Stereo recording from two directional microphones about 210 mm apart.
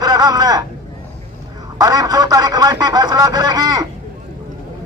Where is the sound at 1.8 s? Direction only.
15° right (ahead or behind).